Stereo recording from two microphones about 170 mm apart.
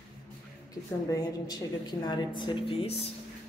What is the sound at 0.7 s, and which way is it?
A woman's voice, 20° left (ahead or behind).